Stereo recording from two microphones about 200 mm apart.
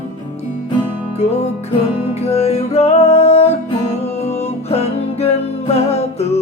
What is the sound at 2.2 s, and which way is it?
Music, 30° left (ahead or behind).